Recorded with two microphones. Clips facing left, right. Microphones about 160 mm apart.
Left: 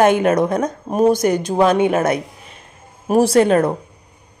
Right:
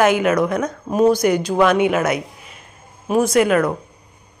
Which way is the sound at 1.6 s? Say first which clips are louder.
Left 2 dB; 30° left (ahead or behind).